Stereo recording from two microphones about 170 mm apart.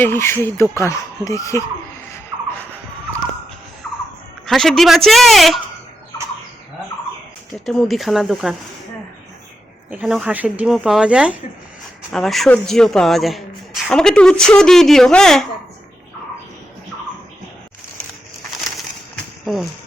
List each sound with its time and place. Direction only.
0.0 s speech: 15° left (ahead or behind)
4.4 s speech: centre (ahead or behind)
7.6 s speech: centre (ahead or behind)
9.9 s speech: 5° right (ahead or behind)